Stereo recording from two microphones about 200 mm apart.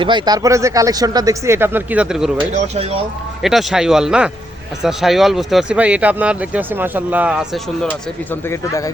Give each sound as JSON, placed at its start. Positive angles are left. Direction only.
{"t": 0.0, "sound": "speech", "side_deg": -25}
{"t": 2.6, "sound": "speech", "side_deg": -30}
{"t": 3.4, "sound": "speech", "side_deg": 0}
{"t": 8.3, "sound": "speech", "side_deg": 15}